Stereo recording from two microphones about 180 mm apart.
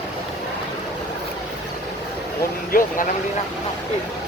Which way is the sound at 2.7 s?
55° left (ahead or behind).